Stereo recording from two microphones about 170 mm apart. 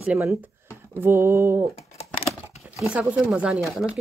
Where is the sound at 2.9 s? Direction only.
5° right (ahead or behind).